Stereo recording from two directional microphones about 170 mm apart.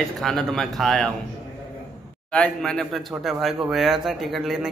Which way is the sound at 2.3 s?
5° left (ahead or behind).